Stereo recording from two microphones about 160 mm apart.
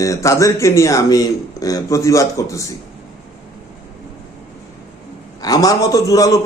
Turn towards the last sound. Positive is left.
turn(degrees=20)  # may be behind; listen again after turning